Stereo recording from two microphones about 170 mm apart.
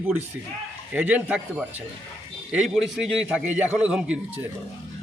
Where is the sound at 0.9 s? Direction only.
10° right (ahead or behind).